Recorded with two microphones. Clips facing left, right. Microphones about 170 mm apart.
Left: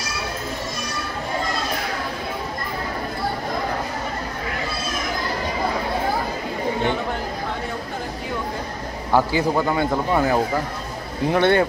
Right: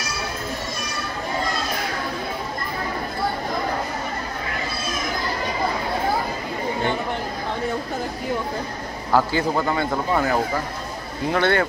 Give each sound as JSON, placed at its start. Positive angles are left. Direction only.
{"t": 9.1, "sound": "a man's voice", "side_deg": 10}